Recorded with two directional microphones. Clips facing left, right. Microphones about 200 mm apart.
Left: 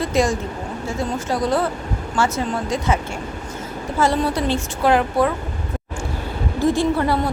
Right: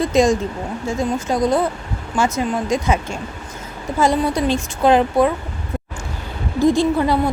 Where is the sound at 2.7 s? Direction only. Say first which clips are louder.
Right 2 dB; 15° right (ahead or behind).